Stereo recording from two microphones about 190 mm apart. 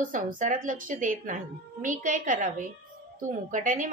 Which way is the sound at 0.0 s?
45° right (ahead or behind).